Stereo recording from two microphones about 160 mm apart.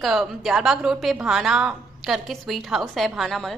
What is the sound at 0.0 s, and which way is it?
A woman's voice, centre (ahead or behind).